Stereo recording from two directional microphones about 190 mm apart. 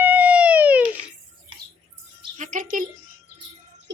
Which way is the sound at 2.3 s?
40° right (ahead or behind).